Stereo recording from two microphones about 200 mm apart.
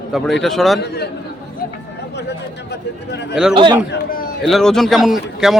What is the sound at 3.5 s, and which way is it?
Speech, 20° right (ahead or behind).